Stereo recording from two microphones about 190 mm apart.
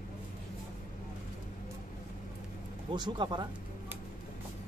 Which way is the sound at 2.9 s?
25° right (ahead or behind).